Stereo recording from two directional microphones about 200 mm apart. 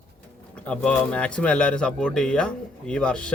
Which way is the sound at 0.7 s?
5° left (ahead or behind).